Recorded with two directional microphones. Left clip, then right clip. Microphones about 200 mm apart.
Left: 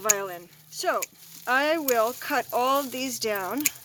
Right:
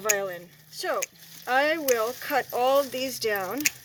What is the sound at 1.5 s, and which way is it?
Speech, 45° left (ahead or behind).